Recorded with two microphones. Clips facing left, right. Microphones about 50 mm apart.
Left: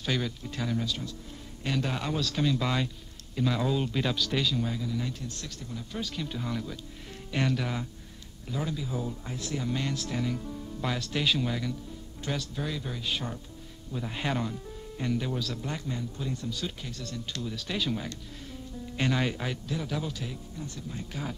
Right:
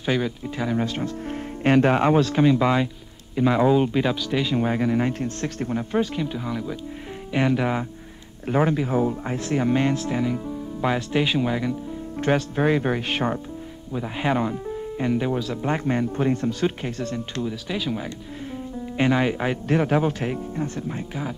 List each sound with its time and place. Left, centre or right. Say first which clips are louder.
0.0 s speech: right 7 dB; right
0.7 s speech: right 8 dB; right; by 4.5 s centre
4.5 s speech: right 9 dB; right
6.1 s speech: right 6 dB; centre
8.5 s speech: right 12 dB; right
12.2 s speech: right 13 dB; right
13.9 s speech: right 8 dB; right
15.9 s speech: right 13 dB; right
17.6 s speech: right 4 dB; centre; by 19.6 s right
19.7 s speech: right 16 dB; right
21.1 s speech: right 6 dB; centre